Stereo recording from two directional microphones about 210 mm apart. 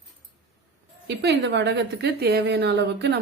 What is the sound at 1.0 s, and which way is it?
A woman's voice, 50° right (ahead or behind).